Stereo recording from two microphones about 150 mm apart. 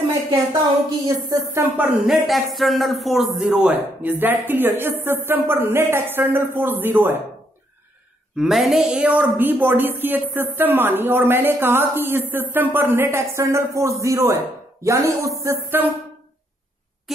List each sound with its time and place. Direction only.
1.0 s speech: 20° right (ahead or behind)
2.0 s a woman's voice: centre (ahead or behind)
8.4 s a woman's voice: centre (ahead or behind)